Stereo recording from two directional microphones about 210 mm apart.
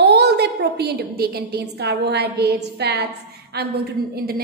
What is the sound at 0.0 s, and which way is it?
A woman's voice, 50° right (ahead or behind).